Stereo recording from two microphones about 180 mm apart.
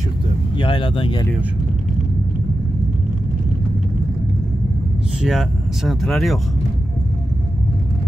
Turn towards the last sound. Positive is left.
turn(degrees=0)  # may be behind; listen again after turning